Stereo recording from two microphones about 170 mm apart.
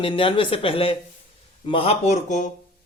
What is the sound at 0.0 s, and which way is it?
A man's voice, 30° left (ahead or behind).